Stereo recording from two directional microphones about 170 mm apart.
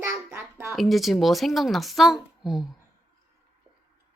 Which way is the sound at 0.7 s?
Centre (ahead or behind).